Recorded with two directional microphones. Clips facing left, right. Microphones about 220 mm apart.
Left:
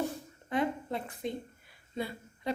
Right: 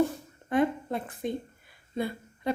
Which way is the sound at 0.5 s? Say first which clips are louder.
Right 5 dB; 50° right (ahead or behind).